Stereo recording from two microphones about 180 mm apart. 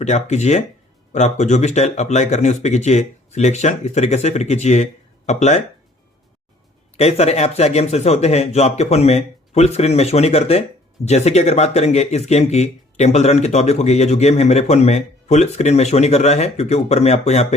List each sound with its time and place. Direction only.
0.0 s speech: 40° left (ahead or behind)
6.9 s speech: 35° left (ahead or behind)